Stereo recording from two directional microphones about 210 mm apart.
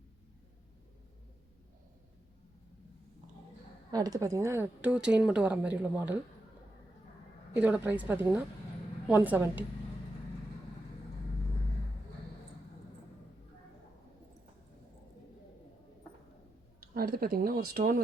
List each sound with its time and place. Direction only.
3.9 s a woman's voice: 20° right (ahead or behind)
7.5 s a woman's voice: 5° right (ahead or behind)
16.9 s speech: 45° right (ahead or behind)